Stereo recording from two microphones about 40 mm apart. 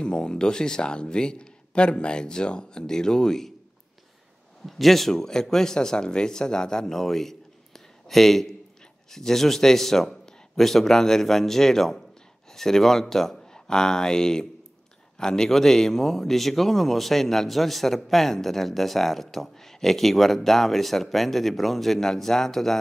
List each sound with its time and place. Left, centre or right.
0.0 s a man's voice: left
4.6 s speech: centre